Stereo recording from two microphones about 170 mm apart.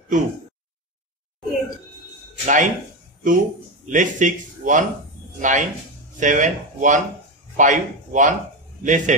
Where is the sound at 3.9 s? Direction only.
50° right (ahead or behind).